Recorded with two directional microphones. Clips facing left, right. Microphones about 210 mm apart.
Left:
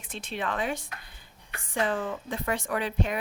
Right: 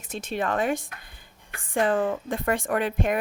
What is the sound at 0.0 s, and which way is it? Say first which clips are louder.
Speech: right 5 dB; 45° right (ahead or behind).